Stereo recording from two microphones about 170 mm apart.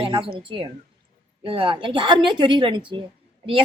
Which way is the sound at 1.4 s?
30° right (ahead or behind).